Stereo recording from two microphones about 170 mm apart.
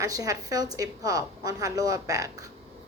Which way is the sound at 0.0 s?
20° right (ahead or behind).